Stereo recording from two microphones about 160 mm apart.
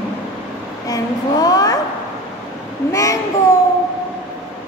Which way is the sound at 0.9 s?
25° left (ahead or behind).